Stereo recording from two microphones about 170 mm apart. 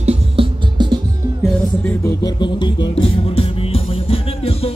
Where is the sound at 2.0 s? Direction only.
25° left (ahead or behind).